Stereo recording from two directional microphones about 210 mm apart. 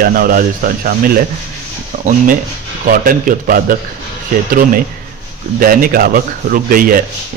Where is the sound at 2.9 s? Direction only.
40° right (ahead or behind).